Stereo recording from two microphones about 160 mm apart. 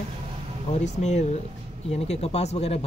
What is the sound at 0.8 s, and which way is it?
Speech, 45° left (ahead or behind).